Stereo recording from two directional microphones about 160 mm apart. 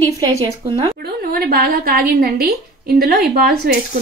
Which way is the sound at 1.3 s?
65° right (ahead or behind).